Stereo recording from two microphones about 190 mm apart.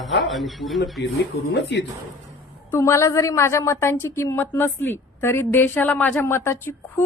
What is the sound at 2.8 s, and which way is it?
Speech, 15° left (ahead or behind).